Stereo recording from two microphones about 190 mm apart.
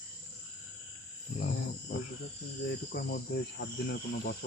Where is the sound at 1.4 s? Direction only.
50° left (ahead or behind).